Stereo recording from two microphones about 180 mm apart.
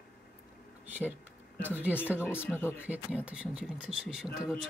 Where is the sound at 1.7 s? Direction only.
10° right (ahead or behind).